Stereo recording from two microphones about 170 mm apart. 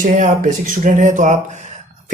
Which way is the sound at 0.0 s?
50° right (ahead or behind).